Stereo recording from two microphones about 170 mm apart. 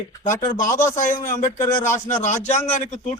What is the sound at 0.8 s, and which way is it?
A man's voice, 50° left (ahead or behind).